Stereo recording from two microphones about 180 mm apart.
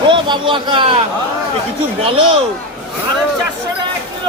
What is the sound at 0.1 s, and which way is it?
Speech, 25° right (ahead or behind).